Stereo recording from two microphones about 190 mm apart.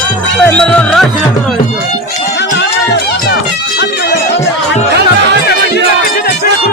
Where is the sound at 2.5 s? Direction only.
65° left (ahead or behind).